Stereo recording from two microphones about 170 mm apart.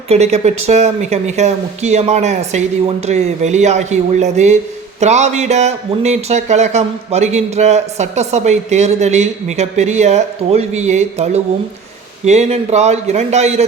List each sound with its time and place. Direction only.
0.1 s speech: 40° right (ahead or behind)